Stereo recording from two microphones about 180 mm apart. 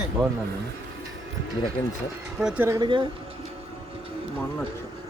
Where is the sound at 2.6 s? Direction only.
25° right (ahead or behind).